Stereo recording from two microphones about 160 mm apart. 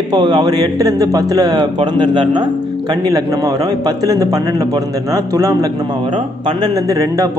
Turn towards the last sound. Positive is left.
turn(degrees=-20)  # may be behind; listen again after turning